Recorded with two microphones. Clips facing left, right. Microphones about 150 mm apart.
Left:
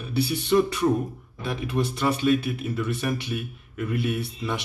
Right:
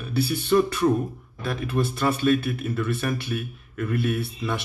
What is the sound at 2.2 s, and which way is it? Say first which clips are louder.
Speech: right 1 dB; 50° right (ahead or behind).